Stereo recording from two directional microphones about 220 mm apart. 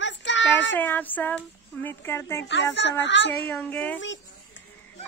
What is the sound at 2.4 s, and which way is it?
Speech, 55° left (ahead or behind).